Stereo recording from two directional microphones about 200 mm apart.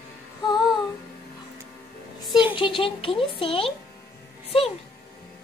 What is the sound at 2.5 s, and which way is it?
Speech, 25° left (ahead or behind).